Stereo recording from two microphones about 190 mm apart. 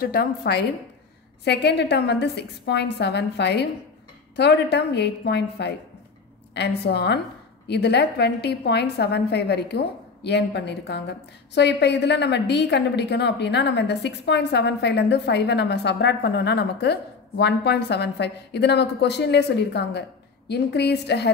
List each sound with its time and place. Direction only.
0.0 s a woman's voice: 55° left (ahead or behind)